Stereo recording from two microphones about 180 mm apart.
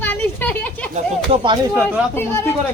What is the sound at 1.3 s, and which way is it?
Speech, 25° right (ahead or behind).